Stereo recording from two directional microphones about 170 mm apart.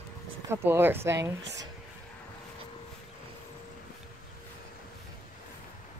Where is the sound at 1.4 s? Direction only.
90° right.